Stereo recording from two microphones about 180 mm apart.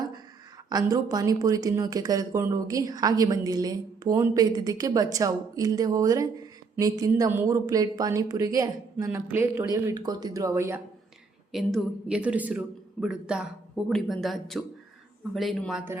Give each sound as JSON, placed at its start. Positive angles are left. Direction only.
{"t": 0.7, "sound": "speech", "side_deg": -20}
{"t": 11.5, "sound": "speech", "side_deg": -5}